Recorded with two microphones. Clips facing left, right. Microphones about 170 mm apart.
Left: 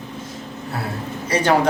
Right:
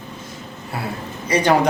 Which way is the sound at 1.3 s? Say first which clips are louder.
Right 1 dB; 10° right (ahead or behind).